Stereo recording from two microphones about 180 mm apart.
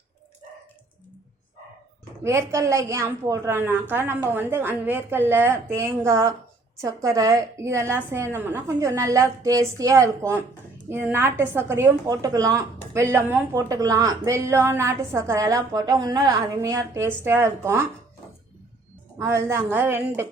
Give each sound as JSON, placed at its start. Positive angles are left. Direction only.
{"t": 2.2, "sound": "a woman's voice", "side_deg": -15}
{"t": 19.2, "sound": "a woman's voice", "side_deg": -15}